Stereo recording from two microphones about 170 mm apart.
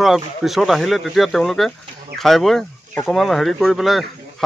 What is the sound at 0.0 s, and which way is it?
A man's voice, centre (ahead or behind).